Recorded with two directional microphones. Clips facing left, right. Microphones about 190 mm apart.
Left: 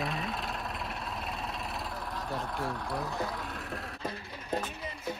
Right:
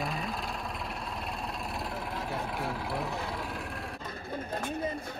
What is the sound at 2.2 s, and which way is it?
Speech, 5° right (ahead or behind).